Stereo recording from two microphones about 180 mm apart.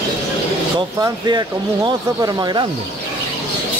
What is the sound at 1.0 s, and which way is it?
Speech, 25° right (ahead or behind).